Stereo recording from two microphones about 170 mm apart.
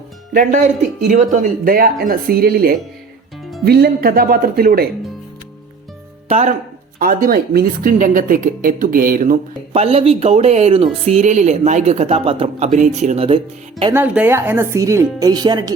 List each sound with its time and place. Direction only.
0.3 s speech: 45° right (ahead or behind); by 4.9 s 60° right (ahead or behind)
6.2 s speech: 40° right (ahead or behind)
7.0 s speech: 55° right (ahead or behind); by 13.9 s 35° right (ahead or behind)
13.9 s speech: 10° right (ahead or behind); by 15.7 s 25° right (ahead or behind)